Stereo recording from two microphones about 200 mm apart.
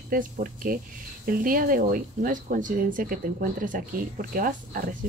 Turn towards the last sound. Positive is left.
turn(degrees=-45)  # may be behind; listen again after turning